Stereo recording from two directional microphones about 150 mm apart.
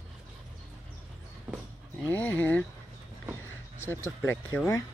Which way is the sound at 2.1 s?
10° left (ahead or behind).